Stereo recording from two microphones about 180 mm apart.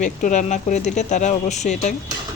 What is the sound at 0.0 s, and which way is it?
Speech, 45° left (ahead or behind).